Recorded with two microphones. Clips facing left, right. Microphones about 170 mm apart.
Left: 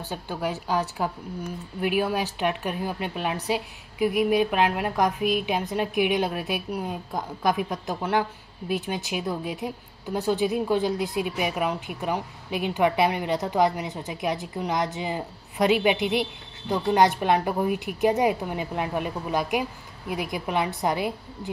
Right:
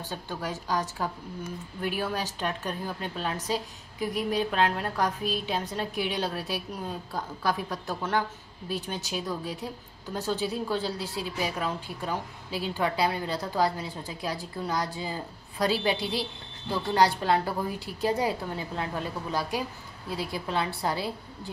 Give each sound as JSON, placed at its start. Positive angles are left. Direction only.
{"t": 0.1, "sound": "a woman's voice", "side_deg": 15}